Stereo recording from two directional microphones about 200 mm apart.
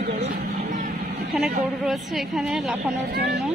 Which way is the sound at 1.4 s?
Centre (ahead or behind).